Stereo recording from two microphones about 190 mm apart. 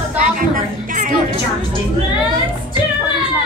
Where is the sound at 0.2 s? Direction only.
45° right (ahead or behind).